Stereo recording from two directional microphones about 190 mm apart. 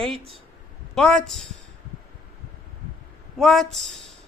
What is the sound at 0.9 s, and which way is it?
Speech, 5° left (ahead or behind).